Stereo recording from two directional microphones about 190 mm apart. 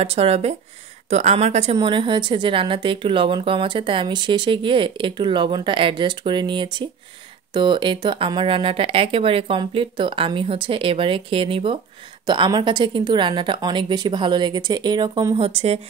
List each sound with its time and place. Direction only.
0.0 s a woman's voice: 30° right (ahead or behind)